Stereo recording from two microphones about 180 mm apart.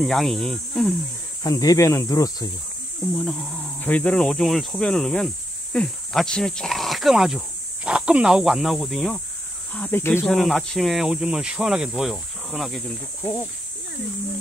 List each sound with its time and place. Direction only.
0.0 s speech: centre (ahead or behind)
1.4 s speech: 20° left (ahead or behind)
3.2 s speech: 5° left (ahead or behind)
9.8 s speech: 10° left (ahead or behind)
10.2 s speech: centre (ahead or behind)